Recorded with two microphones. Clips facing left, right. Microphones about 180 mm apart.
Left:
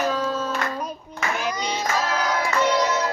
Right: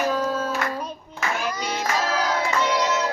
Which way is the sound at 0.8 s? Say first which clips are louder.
Left 2 dB; 10° left (ahead or behind).